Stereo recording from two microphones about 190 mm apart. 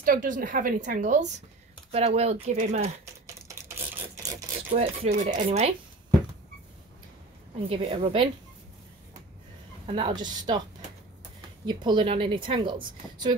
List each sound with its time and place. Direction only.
0.0 s speech: 45° right (ahead or behind)
3.3 s a sound: 15° right (ahead or behind)
4.2 s rub: 35° right (ahead or behind)
5.4 s speech: 30° right (ahead or behind)
7.7 s a woman's voice: 30° right (ahead or behind)
9.8 s a woman's voice: 30° right (ahead or behind)
11.6 s a woman's voice: 25° right (ahead or behind)